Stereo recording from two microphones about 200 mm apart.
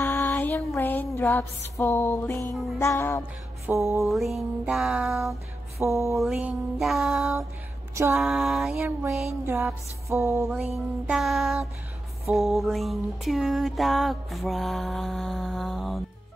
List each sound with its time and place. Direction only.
0.0 s music: 15° left (ahead or behind)
3.6 s music: 15° right (ahead or behind)
4.1 s music: centre (ahead or behind)
5.8 s music: 15° right (ahead or behind)
6.1 s music: 5° right (ahead or behind)
7.9 s a sound: 15° right (ahead or behind)
8.2 s music: 5° right (ahead or behind)
10.5 s music: centre (ahead or behind)